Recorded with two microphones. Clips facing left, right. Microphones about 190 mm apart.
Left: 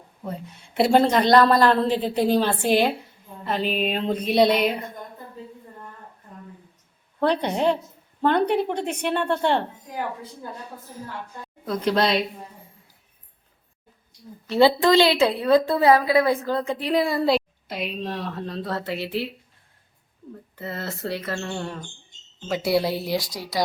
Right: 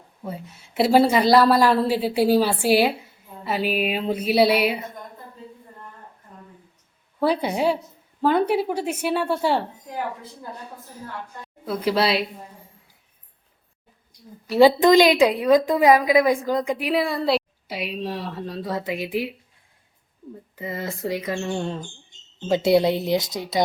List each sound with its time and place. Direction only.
0.2 s a woman's voice: 5° right (ahead or behind)
7.2 s a woman's voice: 5° right (ahead or behind)
11.6 s a woman's voice: 5° right (ahead or behind)
14.4 s a woman's voice: 15° right (ahead or behind)
20.6 s a woman's voice: 10° right (ahead or behind)